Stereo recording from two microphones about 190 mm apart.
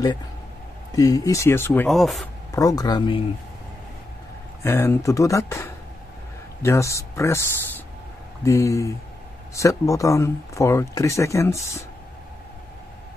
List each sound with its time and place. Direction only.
0.9 s speech: 20° left (ahead or behind)
1.9 s speech: centre (ahead or behind)
2.5 s speech: 20° left (ahead or behind)
4.6 s speech: 15° left (ahead or behind)